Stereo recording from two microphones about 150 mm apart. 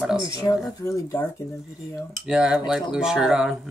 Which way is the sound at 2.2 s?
5° right (ahead or behind).